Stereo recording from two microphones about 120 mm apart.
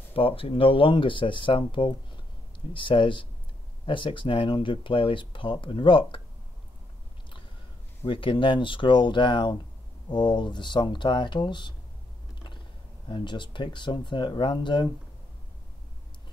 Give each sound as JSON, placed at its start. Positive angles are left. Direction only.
{"t": 0.1, "sound": "speech", "side_deg": 50}
{"t": 8.0, "sound": "speech", "side_deg": 45}
{"t": 13.1, "sound": "speech", "side_deg": 40}